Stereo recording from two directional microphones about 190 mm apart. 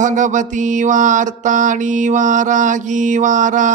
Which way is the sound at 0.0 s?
40° right (ahead or behind).